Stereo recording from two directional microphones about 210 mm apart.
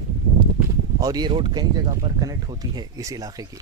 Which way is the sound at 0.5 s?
15° right (ahead or behind).